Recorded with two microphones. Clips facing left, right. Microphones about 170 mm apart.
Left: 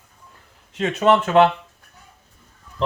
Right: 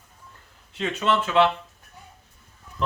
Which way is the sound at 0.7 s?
50° left (ahead or behind).